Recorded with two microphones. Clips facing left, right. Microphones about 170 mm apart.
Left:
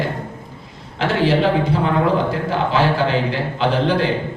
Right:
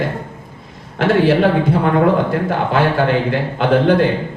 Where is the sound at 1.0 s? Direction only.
55° right (ahead or behind).